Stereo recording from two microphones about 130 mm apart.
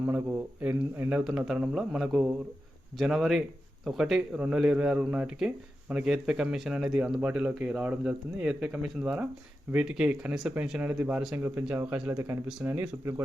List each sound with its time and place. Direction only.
0.6 s speech: 15° right (ahead or behind)